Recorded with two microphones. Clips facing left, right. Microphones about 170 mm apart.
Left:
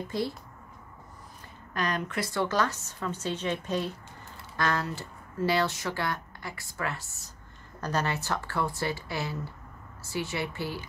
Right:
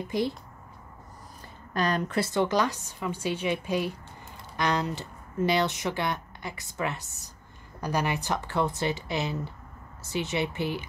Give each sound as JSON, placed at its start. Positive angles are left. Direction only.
{"t": 0.1, "sound": "a woman's voice", "side_deg": -15}
{"t": 1.7, "sound": "a woman's voice", "side_deg": -35}
{"t": 2.4, "sound": "a woman's voice", "side_deg": -15}